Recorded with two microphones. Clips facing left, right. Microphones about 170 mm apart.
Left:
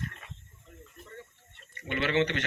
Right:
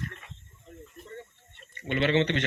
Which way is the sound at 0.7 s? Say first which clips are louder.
Right 5 dB; 25° right (ahead or behind).